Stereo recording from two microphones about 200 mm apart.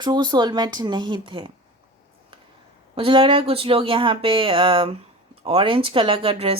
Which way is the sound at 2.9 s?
25° right (ahead or behind).